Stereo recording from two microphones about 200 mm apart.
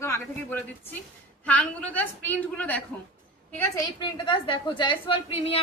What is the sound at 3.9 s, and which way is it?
A woman's voice, 25° left (ahead or behind).